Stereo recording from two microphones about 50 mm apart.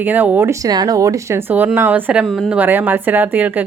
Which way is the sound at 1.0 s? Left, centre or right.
Right.